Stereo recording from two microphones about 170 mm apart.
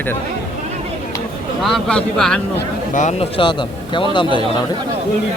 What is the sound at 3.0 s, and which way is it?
Speech, 45° left (ahead or behind).